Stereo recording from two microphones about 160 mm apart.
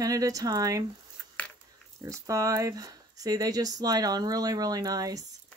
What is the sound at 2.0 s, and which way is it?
Speech, 20° right (ahead or behind).